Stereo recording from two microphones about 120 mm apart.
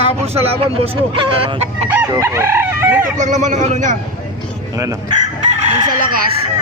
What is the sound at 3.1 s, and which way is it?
Speech, 90° right.